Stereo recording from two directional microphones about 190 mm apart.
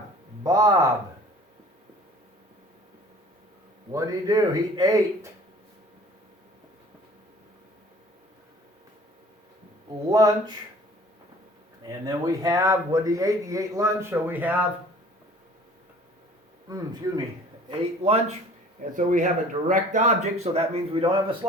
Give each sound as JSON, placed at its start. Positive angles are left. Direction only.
{"t": 0.4, "sound": "speech", "side_deg": -20}
{"t": 3.9, "sound": "speech", "side_deg": -20}
{"t": 10.1, "sound": "speech", "side_deg": -20}
{"t": 11.9, "sound": "a man's voice", "side_deg": -20}
{"t": 16.6, "sound": "speech", "side_deg": -20}
{"t": 17.7, "sound": "speech", "side_deg": -30}
{"t": 18.9, "sound": "speech", "side_deg": -45}